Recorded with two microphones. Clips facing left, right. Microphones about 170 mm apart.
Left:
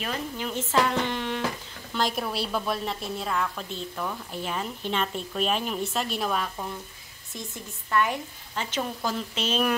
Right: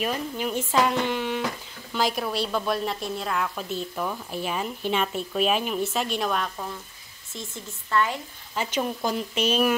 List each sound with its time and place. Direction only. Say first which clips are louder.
0.0 s a woman's voice: right 4 dB; 15° right (ahead or behind); by 6.4 s 5° left (ahead or behind)
7.3 s speech: right 1 dB; 15° left (ahead or behind)
8.5 s speech: right 3 dB; 10° right (ahead or behind)